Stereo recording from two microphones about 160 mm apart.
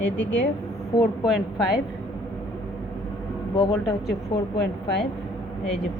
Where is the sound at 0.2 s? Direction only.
90° left.